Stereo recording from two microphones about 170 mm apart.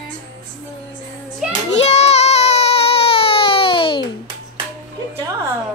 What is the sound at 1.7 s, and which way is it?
Child singing, 40° left (ahead or behind).